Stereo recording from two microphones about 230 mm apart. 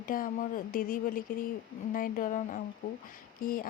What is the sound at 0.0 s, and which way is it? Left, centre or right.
Speech, left.